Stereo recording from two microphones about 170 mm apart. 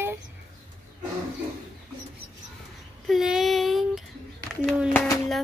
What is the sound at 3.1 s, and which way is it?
Child singing, centre (ahead or behind).